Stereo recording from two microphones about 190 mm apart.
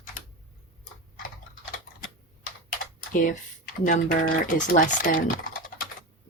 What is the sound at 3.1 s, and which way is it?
Speech, 45° left (ahead or behind).